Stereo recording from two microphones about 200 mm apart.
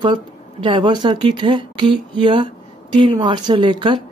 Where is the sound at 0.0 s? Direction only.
25° right (ahead or behind).